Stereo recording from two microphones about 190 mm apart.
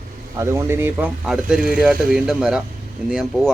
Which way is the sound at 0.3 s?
15° right (ahead or behind).